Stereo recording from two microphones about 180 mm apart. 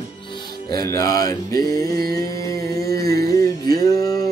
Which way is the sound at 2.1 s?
20° left (ahead or behind).